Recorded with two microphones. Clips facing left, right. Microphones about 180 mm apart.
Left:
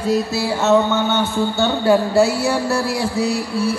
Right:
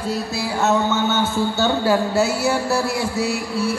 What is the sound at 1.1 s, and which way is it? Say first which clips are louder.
A man's voice: left 1 dB; 5° right (ahead or behind).